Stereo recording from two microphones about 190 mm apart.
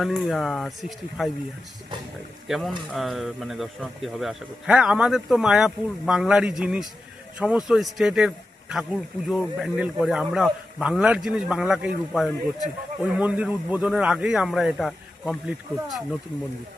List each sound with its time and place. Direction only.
0.0 s speech: centre (ahead or behind)
2.5 s speech: centre (ahead or behind)